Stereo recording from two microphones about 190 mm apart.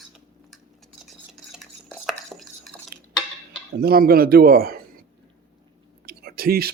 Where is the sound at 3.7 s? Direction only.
55° right (ahead or behind).